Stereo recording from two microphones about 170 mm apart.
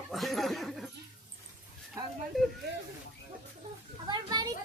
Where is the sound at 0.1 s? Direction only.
Centre (ahead or behind).